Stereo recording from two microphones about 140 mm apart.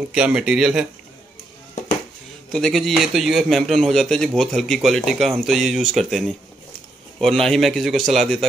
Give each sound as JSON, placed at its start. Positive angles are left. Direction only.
{"t": 0.1, "sound": "speech", "side_deg": -5}
{"t": 2.5, "sound": "speech", "side_deg": 5}